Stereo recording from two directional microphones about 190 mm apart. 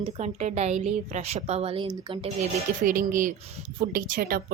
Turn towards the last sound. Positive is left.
turn(degrees=-50)  # may be behind; listen again after turning